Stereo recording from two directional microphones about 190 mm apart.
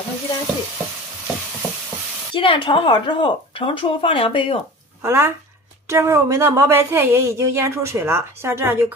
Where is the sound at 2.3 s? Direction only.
25° left (ahead or behind).